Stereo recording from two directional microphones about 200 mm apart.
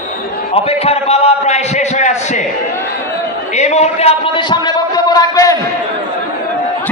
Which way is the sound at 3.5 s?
35° left (ahead or behind).